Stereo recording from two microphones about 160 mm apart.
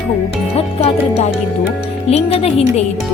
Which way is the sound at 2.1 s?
40° left (ahead or behind).